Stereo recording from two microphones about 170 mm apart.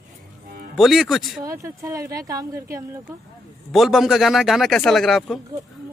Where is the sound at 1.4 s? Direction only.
20° right (ahead or behind).